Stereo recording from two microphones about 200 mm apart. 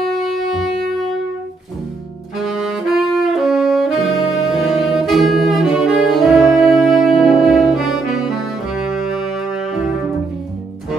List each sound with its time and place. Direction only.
0.0 s wind instrument: centre (ahead or behind)
2.3 s saxophone: centre (ahead or behind)